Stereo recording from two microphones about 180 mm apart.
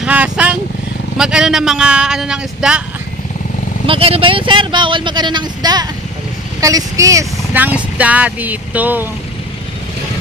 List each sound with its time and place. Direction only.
0.0 s vehicle: 10° right (ahead or behind)
1.1 s speech: 5° right (ahead or behind)
3.8 s speech: 30° right (ahead or behind); by 9.0 s 10° right (ahead or behind)